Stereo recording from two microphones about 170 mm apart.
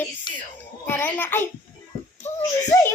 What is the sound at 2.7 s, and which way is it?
Speech, 20° left (ahead or behind).